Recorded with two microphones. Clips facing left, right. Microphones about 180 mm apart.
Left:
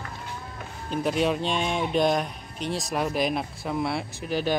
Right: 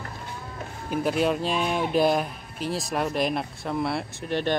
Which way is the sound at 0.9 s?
Centre (ahead or behind).